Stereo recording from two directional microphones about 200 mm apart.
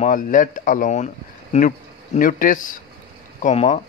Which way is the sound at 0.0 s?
40° left (ahead or behind).